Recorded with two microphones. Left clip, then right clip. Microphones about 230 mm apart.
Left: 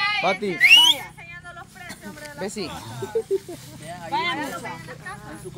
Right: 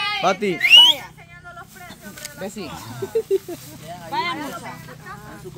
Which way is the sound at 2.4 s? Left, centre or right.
Left.